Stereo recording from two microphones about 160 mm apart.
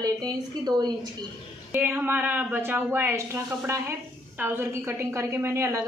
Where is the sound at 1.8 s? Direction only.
10° right (ahead or behind).